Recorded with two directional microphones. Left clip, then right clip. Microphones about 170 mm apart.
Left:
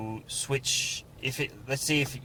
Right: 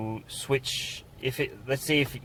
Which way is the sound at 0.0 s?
30° right (ahead or behind).